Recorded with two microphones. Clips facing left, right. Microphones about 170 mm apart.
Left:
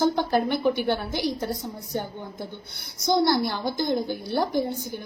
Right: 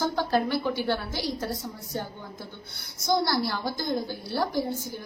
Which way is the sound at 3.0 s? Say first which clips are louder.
Left 4 dB; 20° left (ahead or behind).